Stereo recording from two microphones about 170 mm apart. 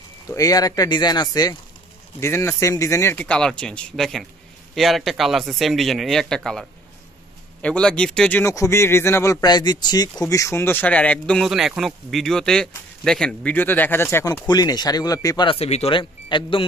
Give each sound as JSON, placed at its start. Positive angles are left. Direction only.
{"t": 0.3, "sound": "speech", "side_deg": 20}
{"t": 14.5, "sound": "speech", "side_deg": 25}